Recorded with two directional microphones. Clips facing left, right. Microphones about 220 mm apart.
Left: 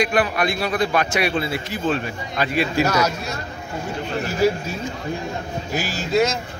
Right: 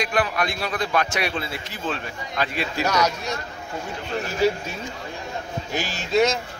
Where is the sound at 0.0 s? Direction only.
5° left (ahead or behind).